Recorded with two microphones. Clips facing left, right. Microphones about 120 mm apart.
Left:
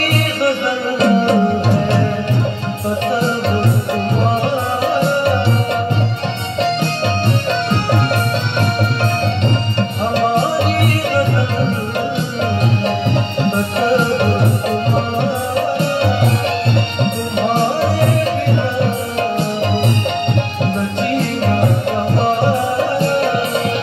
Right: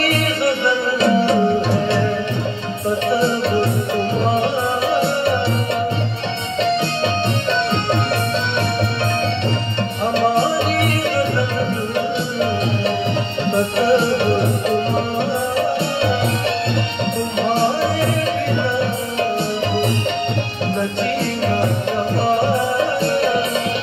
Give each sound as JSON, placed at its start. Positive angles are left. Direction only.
{"t": 0.1, "sound": "music", "side_deg": 45}
{"t": 3.1, "sound": "music", "side_deg": 40}
{"t": 4.8, "sound": "music", "side_deg": 40}
{"t": 10.1, "sound": "music", "side_deg": 40}
{"t": 13.7, "sound": "music", "side_deg": 40}
{"t": 17.4, "sound": "music", "side_deg": 40}
{"t": 22.9, "sound": "music", "side_deg": 45}